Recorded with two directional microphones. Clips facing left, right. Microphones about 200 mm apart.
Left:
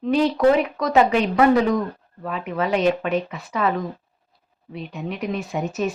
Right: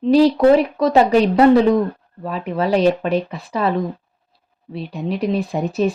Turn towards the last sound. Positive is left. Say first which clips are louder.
# right 5 dB
turn(degrees=-35)  # may be behind; listen again after turning